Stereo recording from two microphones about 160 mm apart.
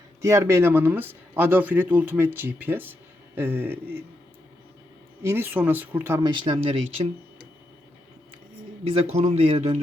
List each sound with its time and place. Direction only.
0.2 s speech: 20° right (ahead or behind)
5.2 s speech: 15° right (ahead or behind)
6.4 s speech: 35° right (ahead or behind)
8.9 s speech: 40° right (ahead or behind)